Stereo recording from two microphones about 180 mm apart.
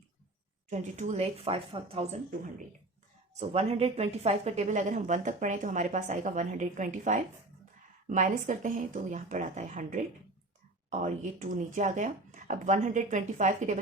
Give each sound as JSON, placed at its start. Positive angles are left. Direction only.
{"t": 0.7, "sound": "a woman's voice", "side_deg": -40}
{"t": 3.3, "sound": "a woman's voice", "side_deg": -35}